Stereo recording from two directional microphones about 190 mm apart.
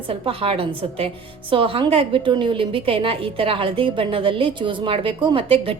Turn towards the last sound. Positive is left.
turn(degrees=-30)  # may be behind; listen again after turning